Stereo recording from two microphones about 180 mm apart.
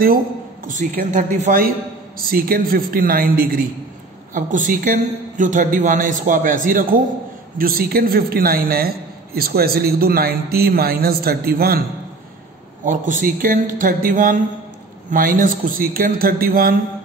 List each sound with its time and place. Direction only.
0.7 s a man's voice: 45° right (ahead or behind)
12.8 s speech: 45° right (ahead or behind)